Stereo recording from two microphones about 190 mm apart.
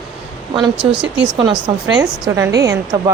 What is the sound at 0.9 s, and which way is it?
Speech, 5° right (ahead or behind).